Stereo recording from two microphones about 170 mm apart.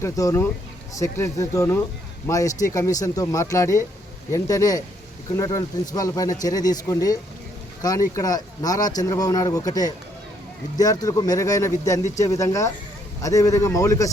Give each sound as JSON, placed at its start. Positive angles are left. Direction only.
{"t": 0.0, "sound": "speech", "side_deg": 15}